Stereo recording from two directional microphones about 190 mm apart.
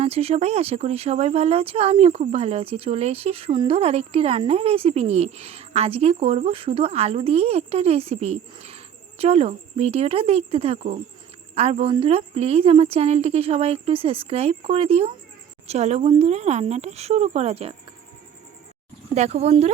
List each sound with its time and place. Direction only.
0.0 s speech: 30° right (ahead or behind)
19.1 s speech: 35° right (ahead or behind)